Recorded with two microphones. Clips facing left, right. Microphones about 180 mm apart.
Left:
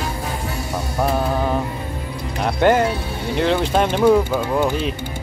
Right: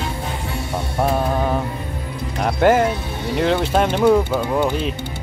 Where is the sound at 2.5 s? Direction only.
5° right (ahead or behind).